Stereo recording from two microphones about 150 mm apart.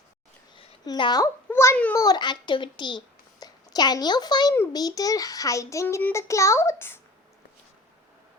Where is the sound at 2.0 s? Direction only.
30° left (ahead or behind).